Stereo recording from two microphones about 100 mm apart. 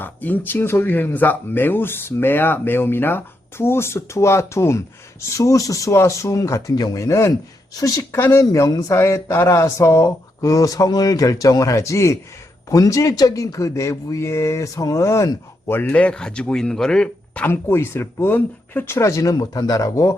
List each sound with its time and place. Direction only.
0.0 s speech: 20° left (ahead or behind)
17.4 s speech: 25° left (ahead or behind)